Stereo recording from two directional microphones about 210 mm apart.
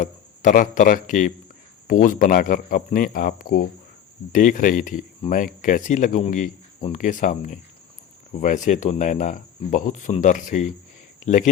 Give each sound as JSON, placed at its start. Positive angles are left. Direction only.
{"t": 0.0, "sound": "speech", "side_deg": 35}